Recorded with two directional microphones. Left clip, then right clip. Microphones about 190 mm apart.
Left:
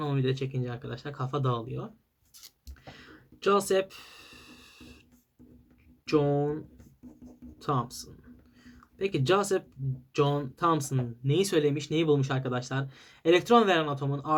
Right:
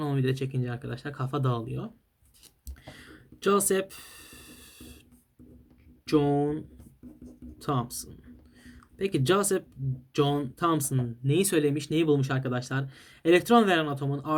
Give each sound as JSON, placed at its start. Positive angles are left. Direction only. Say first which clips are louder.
{"t": 0.0, "sound": "speech", "louder": "right 1 dB", "side_deg": -45}
{"t": 2.8, "sound": "a sound", "louder": "right 1 dB", "side_deg": -45}
{"t": 6.1, "sound": "speech", "louder": "right 1 dB", "side_deg": -50}
{"t": 7.6, "sound": "speech", "louder": "even", "side_deg": -45}